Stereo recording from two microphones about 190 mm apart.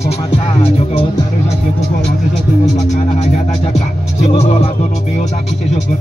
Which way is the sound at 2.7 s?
40° left (ahead or behind).